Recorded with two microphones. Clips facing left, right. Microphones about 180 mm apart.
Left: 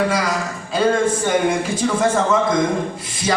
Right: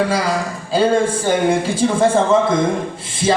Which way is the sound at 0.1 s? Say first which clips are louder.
Right 2 dB; 30° right (ahead or behind).